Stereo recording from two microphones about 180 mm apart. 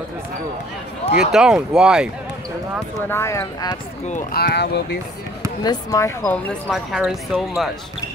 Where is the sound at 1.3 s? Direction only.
5° right (ahead or behind).